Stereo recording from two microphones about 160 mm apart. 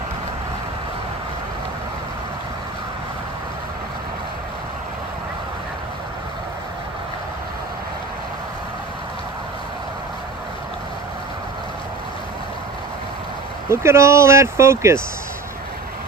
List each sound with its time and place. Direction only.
13.7 s speech: 15° right (ahead or behind)